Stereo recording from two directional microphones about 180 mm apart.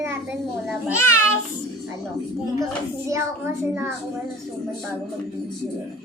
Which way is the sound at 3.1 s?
15° right (ahead or behind).